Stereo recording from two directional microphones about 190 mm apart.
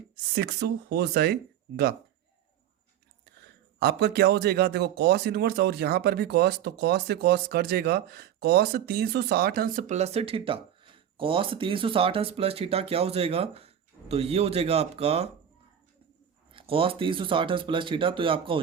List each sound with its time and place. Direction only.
0.3 s speech: 60° right (ahead or behind)
3.8 s speech: 60° right (ahead or behind); by 15.3 s 30° right (ahead or behind)
16.5 s speech: 30° right (ahead or behind)